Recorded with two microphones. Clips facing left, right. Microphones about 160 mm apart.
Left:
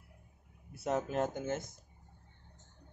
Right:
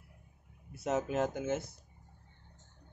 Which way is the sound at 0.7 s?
Centre (ahead or behind).